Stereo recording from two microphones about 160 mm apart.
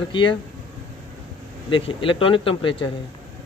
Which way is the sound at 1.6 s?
35° left (ahead or behind).